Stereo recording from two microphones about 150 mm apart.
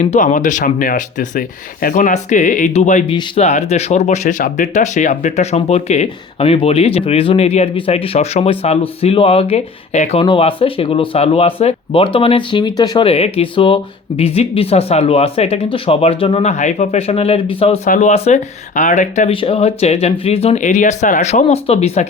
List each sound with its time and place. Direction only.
0.0 s speech: 55° left (ahead or behind)
3.1 s speech: 40° left (ahead or behind)
13.1 s speech: 40° left (ahead or behind)
17.8 s speech: 60° left (ahead or behind)
19.3 s speech: 40° left (ahead or behind)